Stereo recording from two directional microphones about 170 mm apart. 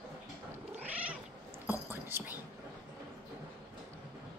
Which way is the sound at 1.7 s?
15° right (ahead or behind).